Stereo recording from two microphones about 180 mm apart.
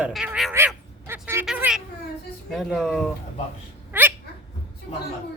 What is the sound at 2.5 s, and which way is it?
Speech, centre (ahead or behind).